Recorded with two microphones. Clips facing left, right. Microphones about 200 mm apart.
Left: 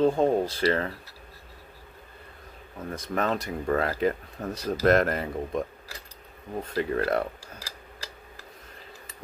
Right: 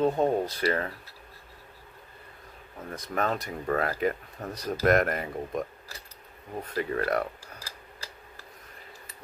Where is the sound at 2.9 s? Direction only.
30° left (ahead or behind).